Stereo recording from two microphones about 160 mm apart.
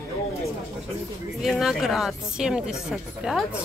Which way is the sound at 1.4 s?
Centre (ahead or behind).